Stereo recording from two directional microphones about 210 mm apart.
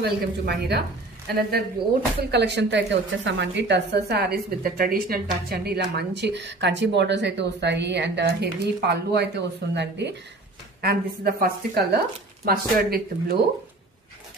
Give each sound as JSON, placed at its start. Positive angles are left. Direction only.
{"t": 0.0, "sound": "a woman's voice", "side_deg": -50}